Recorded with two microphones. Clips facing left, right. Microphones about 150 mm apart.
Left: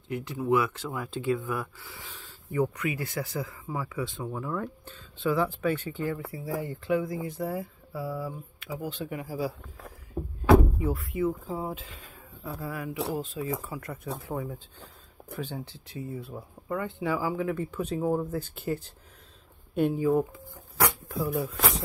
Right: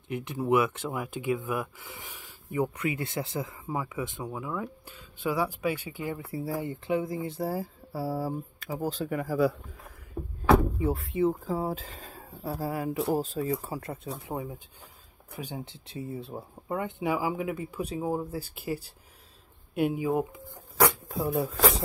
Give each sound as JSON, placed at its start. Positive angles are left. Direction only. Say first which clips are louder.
{"t": 0.1, "sound": "speech", "louder": "even", "side_deg": -20}
{"t": 6.3, "sound": "speech", "louder": "right 1 dB", "side_deg": -25}
{"t": 10.8, "sound": "speech", "louder": "right 2 dB", "side_deg": -30}
{"t": 11.4, "sound": "speech", "louder": "right 3 dB", "side_deg": -40}
{"t": 14.2, "sound": "speech", "louder": "left 1 dB", "side_deg": -20}
{"t": 19.9, "sound": "speech", "louder": "left 3 dB", "side_deg": -15}